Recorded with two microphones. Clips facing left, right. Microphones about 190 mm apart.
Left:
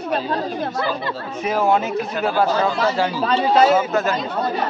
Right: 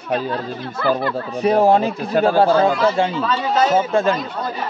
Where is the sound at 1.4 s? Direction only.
35° right (ahead or behind).